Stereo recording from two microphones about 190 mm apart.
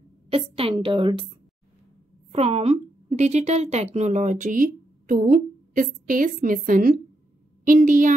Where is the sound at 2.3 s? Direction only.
35° right (ahead or behind).